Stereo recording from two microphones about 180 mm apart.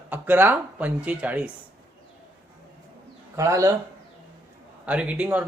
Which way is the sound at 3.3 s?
15° right (ahead or behind).